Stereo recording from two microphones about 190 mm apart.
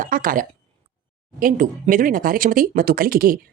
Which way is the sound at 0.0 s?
45° right (ahead or behind).